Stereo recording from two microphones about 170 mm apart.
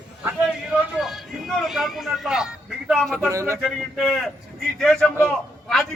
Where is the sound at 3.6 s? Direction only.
Centre (ahead or behind).